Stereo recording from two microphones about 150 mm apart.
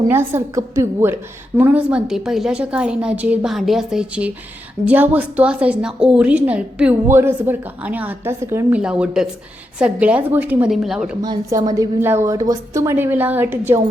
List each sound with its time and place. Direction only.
0.1 s a woman's voice: 15° right (ahead or behind)
8.8 s a woman's voice: 5° right (ahead or behind)
11.2 s a woman's voice: 25° right (ahead or behind)